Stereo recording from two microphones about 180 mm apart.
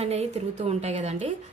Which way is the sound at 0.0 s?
35° right (ahead or behind).